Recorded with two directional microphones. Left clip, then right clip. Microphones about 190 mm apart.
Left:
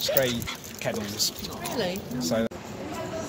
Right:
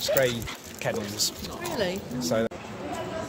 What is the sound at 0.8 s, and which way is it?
Speech, 50° right (ahead or behind).